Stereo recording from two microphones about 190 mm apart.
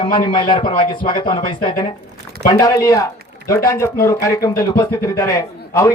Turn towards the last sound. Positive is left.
turn(degrees=15)  # may be behind; listen again after turning